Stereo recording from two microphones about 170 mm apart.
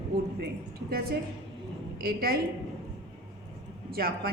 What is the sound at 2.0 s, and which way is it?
Speech, 60° right (ahead or behind).